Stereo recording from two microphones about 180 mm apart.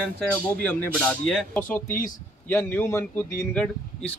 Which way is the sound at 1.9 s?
50° left (ahead or behind).